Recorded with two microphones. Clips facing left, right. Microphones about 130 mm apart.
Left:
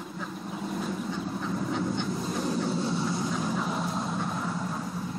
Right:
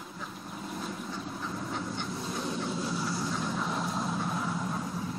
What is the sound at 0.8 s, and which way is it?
Duck, centre (ahead or behind).